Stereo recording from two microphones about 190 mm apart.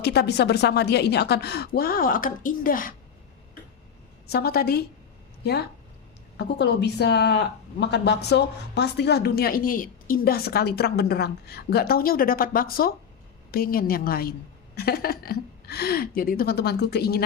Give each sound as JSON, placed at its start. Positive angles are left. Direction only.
{"t": 0.0, "sound": "a woman's voice", "side_deg": 60}
{"t": 4.3, "sound": "a woman's voice", "side_deg": 55}